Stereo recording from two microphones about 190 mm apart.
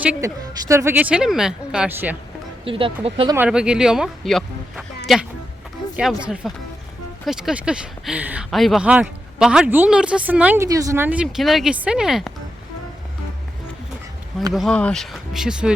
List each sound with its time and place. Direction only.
0.0 s a woman's voice: 5° right (ahead or behind)
2.6 s speech: 30° right (ahead or behind)
3.3 s speech: 5° right (ahead or behind)
14.5 s speech: centre (ahead or behind)